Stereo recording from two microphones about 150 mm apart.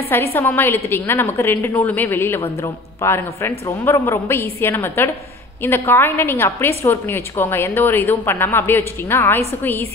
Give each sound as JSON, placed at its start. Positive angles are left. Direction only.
{"t": 0.1, "sound": "a woman's voice", "side_deg": 15}